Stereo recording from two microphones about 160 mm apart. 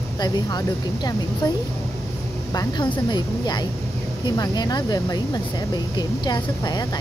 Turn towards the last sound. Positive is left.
turn(degrees=25)  # may be behind; listen again after turning